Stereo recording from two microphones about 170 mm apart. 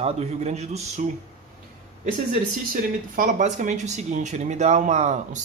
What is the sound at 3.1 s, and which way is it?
Speech, 50° right (ahead or behind).